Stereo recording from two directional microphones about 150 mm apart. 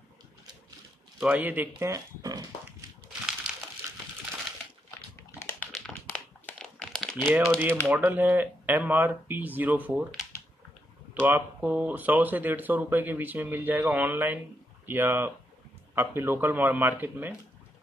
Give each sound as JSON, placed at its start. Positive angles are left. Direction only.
{"t": 1.2, "sound": "speech", "side_deg": -10}
{"t": 1.8, "sound": "speech", "side_deg": -20}
{"t": 5.8, "sound": "crumpling", "side_deg": 5}
{"t": 7.2, "sound": "speech", "side_deg": -10}
{"t": 11.2, "sound": "speech", "side_deg": -10}